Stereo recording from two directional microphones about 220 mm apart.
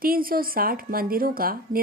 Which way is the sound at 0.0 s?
40° right (ahead or behind).